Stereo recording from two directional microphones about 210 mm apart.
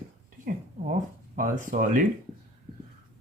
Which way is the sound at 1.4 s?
40° right (ahead or behind).